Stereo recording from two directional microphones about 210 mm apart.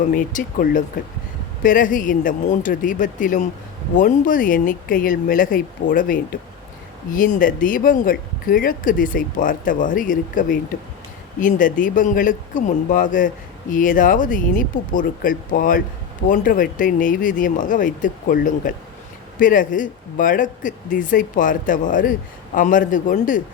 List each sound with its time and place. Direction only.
0.1 s speech: 40° left (ahead or behind)